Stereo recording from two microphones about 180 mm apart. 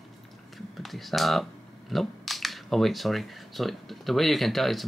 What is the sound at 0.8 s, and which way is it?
Speech, centre (ahead or behind).